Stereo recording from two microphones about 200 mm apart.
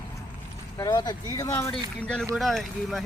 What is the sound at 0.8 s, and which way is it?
Speech, 20° left (ahead or behind).